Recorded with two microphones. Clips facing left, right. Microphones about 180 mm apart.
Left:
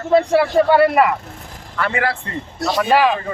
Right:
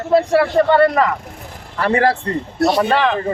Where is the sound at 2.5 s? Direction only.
60° right (ahead or behind).